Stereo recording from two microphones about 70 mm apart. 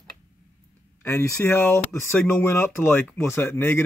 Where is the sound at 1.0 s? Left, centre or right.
Left.